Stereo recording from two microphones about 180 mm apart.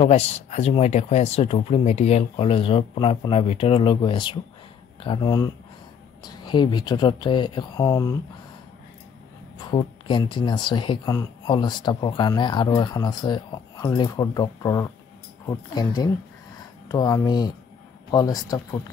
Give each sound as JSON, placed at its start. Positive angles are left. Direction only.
{"t": 0.0, "sound": "speech", "side_deg": 35}
{"t": 9.6, "sound": "speech", "side_deg": 25}